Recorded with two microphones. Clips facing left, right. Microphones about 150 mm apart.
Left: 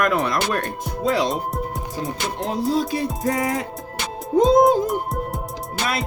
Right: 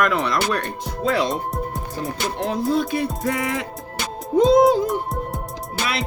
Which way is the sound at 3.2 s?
40° left (ahead or behind).